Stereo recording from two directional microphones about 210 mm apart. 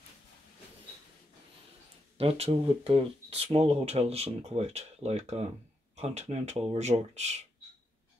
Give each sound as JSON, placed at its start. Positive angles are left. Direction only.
{"t": 2.1, "sound": "speech", "side_deg": -30}